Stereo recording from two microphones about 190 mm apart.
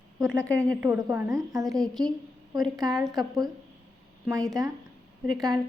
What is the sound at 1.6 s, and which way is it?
A woman's voice, centre (ahead or behind).